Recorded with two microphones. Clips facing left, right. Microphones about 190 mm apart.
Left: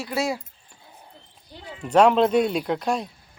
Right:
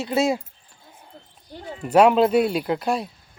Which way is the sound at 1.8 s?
5° right (ahead or behind).